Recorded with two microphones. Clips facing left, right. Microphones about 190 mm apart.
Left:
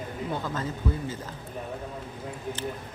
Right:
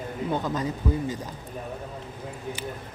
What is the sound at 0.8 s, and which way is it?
Speech, 10° right (ahead or behind).